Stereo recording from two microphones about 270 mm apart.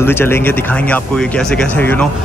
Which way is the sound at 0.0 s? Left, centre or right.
Centre.